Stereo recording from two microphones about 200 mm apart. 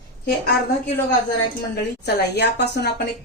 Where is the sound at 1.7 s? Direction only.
55° left (ahead or behind).